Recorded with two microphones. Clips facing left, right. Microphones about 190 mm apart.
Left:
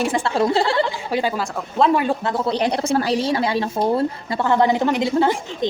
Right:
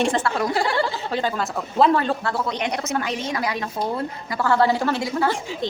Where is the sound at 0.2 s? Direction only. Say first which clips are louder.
Left 4 dB; 25° left (ahead or behind).